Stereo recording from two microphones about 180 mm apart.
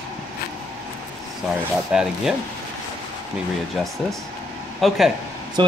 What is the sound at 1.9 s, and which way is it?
Speech, 5° right (ahead or behind).